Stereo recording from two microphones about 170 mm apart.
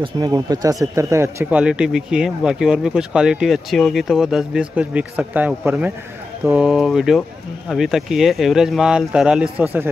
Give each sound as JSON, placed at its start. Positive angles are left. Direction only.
{"t": 0.0, "sound": "a man's voice", "side_deg": -20}